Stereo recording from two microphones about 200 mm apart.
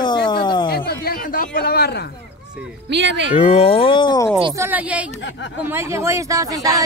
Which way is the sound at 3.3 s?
30° left (ahead or behind).